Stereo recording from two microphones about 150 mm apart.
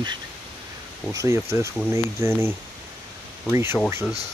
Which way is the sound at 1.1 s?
20° right (ahead or behind).